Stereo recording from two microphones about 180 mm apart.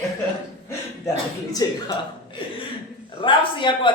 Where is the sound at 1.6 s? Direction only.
20° left (ahead or behind).